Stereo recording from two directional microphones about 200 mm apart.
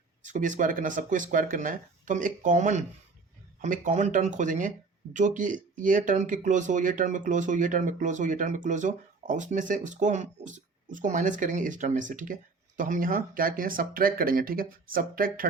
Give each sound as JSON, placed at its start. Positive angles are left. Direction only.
{"t": 0.3, "sound": "speech", "side_deg": -40}